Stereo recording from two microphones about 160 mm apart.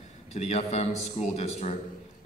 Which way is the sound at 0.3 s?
40° left (ahead or behind).